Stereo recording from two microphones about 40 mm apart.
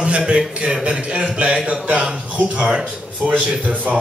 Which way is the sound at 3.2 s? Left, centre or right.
Right.